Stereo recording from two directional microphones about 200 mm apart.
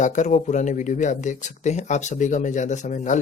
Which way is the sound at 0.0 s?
40° left (ahead or behind).